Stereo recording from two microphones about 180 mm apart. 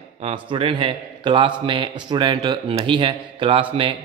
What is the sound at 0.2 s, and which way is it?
A man's voice, 30° right (ahead or behind).